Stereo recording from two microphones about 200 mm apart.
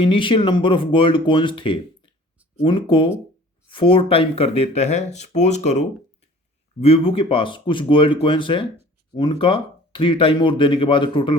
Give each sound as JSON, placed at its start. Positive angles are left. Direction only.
{"t": 0.0, "sound": "speech", "side_deg": 25}